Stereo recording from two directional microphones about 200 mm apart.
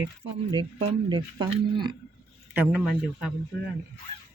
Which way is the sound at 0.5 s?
25° right (ahead or behind).